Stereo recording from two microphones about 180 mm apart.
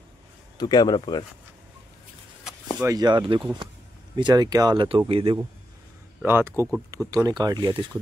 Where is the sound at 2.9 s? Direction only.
25° right (ahead or behind).